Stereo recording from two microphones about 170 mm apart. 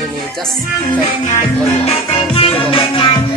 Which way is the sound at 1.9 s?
35° left (ahead or behind).